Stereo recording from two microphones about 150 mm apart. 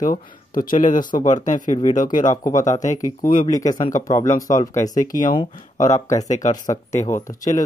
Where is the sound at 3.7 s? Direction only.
25° left (ahead or behind).